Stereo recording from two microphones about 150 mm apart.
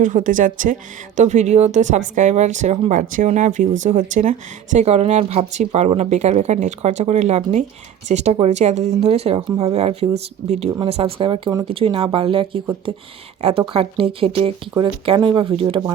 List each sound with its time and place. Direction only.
0.0 s speech: 60° right (ahead or behind)
3.2 s speech: 50° right (ahead or behind)